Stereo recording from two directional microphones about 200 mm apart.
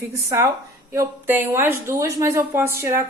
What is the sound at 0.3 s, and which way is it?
Speech, 15° right (ahead or behind).